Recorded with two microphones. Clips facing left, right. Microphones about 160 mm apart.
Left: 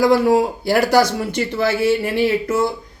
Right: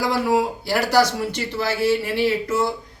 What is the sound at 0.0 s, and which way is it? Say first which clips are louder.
Speech: left 6 dB; 50° left (ahead or behind).